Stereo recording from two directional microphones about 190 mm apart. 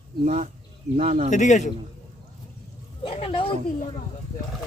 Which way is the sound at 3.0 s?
30° left (ahead or behind).